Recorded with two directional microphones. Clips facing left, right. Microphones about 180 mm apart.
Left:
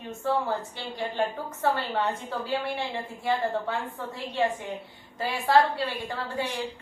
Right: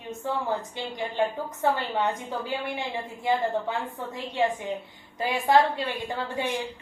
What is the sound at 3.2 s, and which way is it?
A woman's voice, 20° right (ahead or behind).